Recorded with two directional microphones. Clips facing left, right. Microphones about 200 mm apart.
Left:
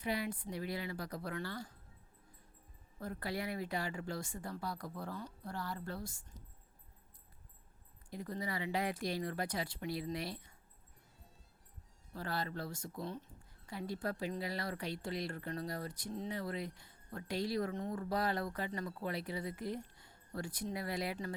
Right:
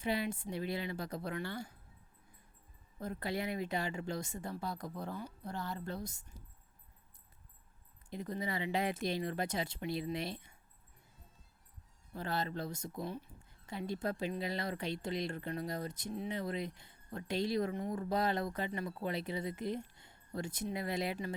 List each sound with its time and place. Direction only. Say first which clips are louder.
0.0 s speech: right 2 dB; 25° right (ahead or behind)
3.0 s speech: right 2 dB; 20° right (ahead or behind)
5.1 s speech: right 2 dB; 5° right (ahead or behind)
5.5 s speech: right 2 dB; 20° right (ahead or behind)
8.1 s speech: right 2 dB; 20° right (ahead or behind)
12.1 s speech: right 2 dB; 20° right (ahead or behind)
13.1 s speech: right 2 dB; 10° right (ahead or behind)
13.7 s speech: right 2 dB; 25° right (ahead or behind)